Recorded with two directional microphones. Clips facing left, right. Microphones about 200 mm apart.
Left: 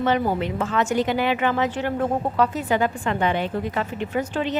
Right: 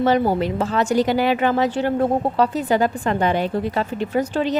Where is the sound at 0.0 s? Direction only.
40° right (ahead or behind).